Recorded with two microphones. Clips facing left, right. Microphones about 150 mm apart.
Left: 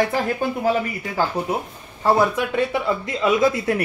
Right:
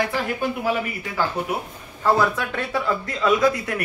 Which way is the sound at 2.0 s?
20° left (ahead or behind).